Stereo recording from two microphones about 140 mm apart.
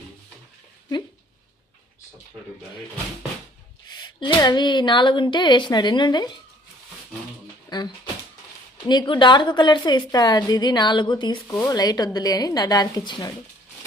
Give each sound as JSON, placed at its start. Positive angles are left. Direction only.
{"t": 3.8, "sound": "a woman's voice", "side_deg": 30}
{"t": 7.7, "sound": "speech", "side_deg": 30}
{"t": 8.9, "sound": "a woman's voice", "side_deg": 30}